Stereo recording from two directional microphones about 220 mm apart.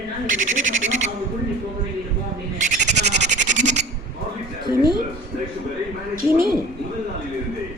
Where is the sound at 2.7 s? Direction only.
35° right (ahead or behind).